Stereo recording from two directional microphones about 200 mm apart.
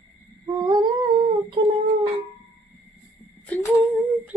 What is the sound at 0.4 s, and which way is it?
Humming, 20° right (ahead or behind).